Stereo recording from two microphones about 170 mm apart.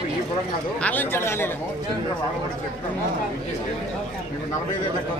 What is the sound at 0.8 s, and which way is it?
Speech, 10° left (ahead or behind).